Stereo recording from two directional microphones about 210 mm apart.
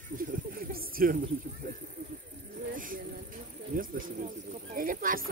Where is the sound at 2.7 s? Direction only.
40° right (ahead or behind).